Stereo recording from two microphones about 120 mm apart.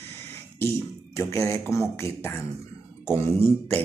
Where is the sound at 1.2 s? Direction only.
25° left (ahead or behind).